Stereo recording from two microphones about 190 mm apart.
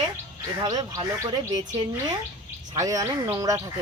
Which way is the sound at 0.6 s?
20° right (ahead or behind).